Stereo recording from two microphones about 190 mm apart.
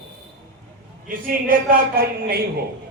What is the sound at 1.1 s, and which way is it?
Speech, 50° right (ahead or behind).